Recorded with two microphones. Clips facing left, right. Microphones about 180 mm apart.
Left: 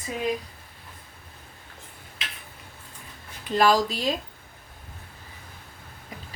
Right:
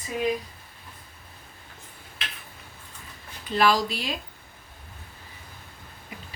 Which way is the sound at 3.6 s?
40° left (ahead or behind).